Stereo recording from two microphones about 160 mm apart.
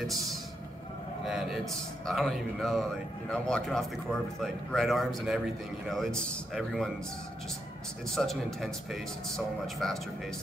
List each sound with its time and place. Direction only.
0.0 s a man's voice: centre (ahead or behind)
8.1 s a man's voice: centre (ahead or behind)